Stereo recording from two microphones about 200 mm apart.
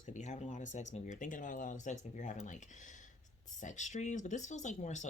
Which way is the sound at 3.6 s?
35° left (ahead or behind).